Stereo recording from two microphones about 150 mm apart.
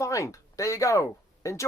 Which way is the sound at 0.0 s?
20° left (ahead or behind).